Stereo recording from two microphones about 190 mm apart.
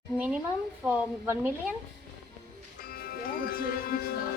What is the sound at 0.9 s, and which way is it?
Speech, 10° right (ahead or behind).